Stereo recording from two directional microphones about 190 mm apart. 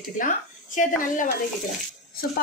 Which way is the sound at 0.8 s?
45° left (ahead or behind).